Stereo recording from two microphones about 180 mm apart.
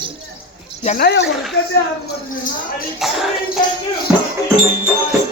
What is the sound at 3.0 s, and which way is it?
Music, centre (ahead or behind).